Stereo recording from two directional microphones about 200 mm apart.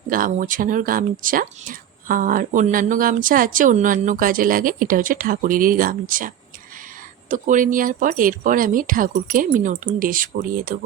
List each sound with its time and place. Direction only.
0.1 s speech: 45° right (ahead or behind)